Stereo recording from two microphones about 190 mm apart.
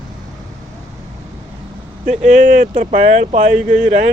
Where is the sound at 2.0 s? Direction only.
40° right (ahead or behind).